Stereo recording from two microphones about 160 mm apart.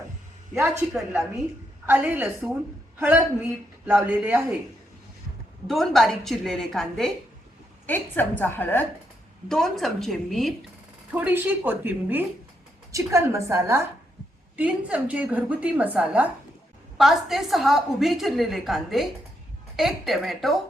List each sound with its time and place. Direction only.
0.9 s a woman's voice: centre (ahead or behind)
5.6 s a woman's voice: centre (ahead or behind)
9.5 s a woman's voice: centre (ahead or behind)
11.1 s a woman's voice: 10° right (ahead or behind)